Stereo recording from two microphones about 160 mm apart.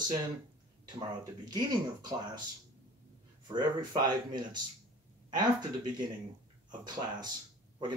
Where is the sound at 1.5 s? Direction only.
25° right (ahead or behind).